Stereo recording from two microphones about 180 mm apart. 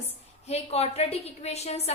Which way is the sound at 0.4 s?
35° left (ahead or behind).